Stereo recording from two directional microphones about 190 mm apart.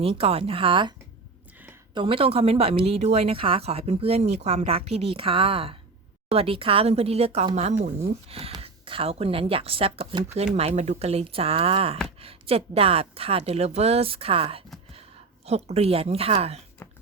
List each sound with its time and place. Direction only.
0.0 s speech: 30° right (ahead or behind)